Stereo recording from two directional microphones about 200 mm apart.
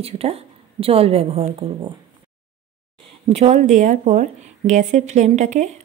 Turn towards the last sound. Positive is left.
turn(degrees=-35)  # may be behind; listen again after turning